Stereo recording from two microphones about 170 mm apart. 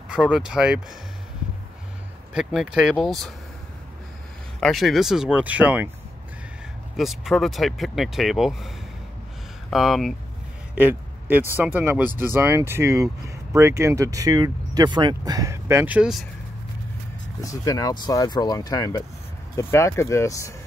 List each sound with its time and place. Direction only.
0.1 s speech: 5° right (ahead or behind)
2.3 s speech: 5° right (ahead or behind)
4.6 s speech: centre (ahead or behind)
7.0 s speech: centre (ahead or behind)
10.7 s speech: 10° right (ahead or behind)
17.4 s speech: 20° left (ahead or behind)